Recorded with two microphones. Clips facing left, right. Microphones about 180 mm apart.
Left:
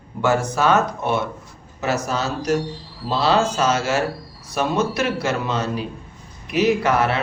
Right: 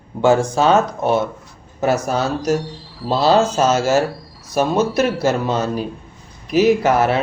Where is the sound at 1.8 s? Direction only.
55° right (ahead or behind).